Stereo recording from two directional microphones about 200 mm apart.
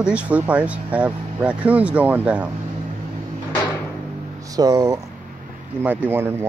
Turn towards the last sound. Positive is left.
turn(degrees=-10)  # may be behind; listen again after turning